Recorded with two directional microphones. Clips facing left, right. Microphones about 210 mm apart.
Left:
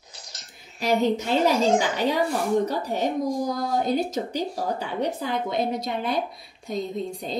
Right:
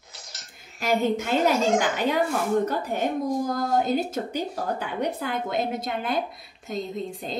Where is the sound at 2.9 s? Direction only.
50° right (ahead or behind).